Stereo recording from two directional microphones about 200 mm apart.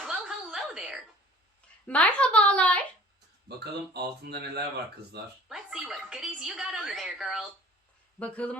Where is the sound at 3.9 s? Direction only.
55° right (ahead or behind).